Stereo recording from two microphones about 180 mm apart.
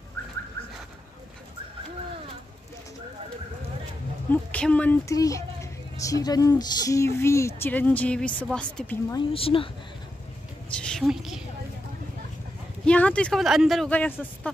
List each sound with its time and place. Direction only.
4.3 s speech: 5° left (ahead or behind)
5.1 s a woman's voice: 20° left (ahead or behind)
9.1 s a woman's voice: 30° left (ahead or behind)
10.7 s a sound: 5° left (ahead or behind)
12.8 s speech: 5° left (ahead or behind)